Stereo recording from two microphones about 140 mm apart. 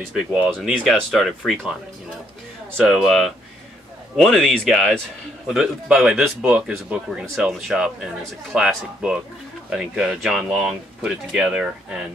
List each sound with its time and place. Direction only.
0.1 s speech: 5° right (ahead or behind)
2.8 s speech: centre (ahead or behind)